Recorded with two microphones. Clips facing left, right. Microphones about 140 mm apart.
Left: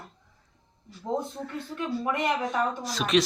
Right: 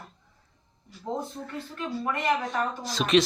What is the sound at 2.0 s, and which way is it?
Speech, 20° left (ahead or behind).